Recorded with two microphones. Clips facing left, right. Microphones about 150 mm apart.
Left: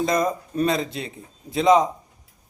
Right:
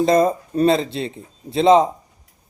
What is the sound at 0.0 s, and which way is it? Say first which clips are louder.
A man's voice: right 6 dB; 30° right (ahead or behind).